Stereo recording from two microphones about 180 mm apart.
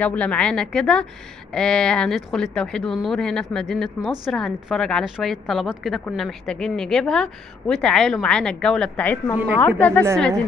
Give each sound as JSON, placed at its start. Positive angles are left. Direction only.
{"t": 0.0, "sound": "a woman's voice", "side_deg": 5}